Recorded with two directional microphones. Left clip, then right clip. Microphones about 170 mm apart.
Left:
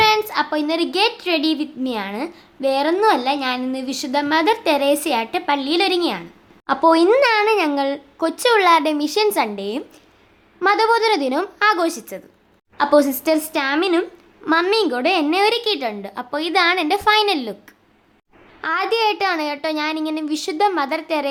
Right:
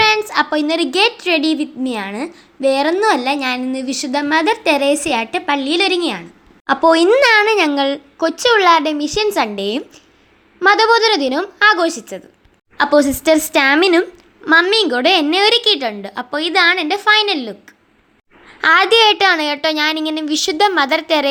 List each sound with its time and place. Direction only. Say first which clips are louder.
0.0 s a woman's voice: right 3 dB; 20° right (ahead or behind)
14.7 s a woman's voice: right 4 dB; 10° right (ahead or behind)
18.6 s a woman's voice: right 9 dB; 20° right (ahead or behind)